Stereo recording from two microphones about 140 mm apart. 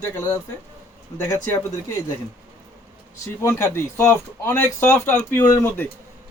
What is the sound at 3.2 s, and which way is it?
A man's voice, 20° left (ahead or behind).